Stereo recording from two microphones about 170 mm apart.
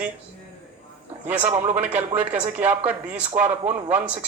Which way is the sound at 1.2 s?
10° right (ahead or behind).